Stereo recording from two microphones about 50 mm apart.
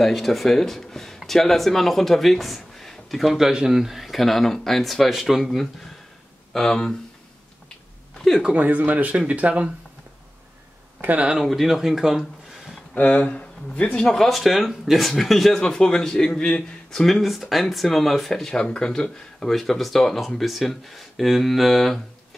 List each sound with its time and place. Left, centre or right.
0.0 s speech: centre
6.5 s a man's voice: centre
8.5 s speech: right
11.0 s speech: right
11.4 s speech: centre
12.9 s a man's voice: left; by 14.3 s centre
14.3 s speech: centre
15.6 s a man's voice: centre
17.0 s speech: centre
18.5 s a man's voice: centre
19.5 s speech: centre